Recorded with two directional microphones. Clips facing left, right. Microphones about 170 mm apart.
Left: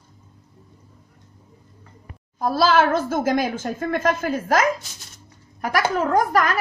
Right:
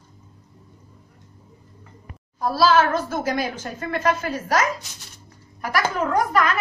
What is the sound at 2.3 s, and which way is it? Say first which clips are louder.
A woman's voice: even; 45° left (ahead or behind).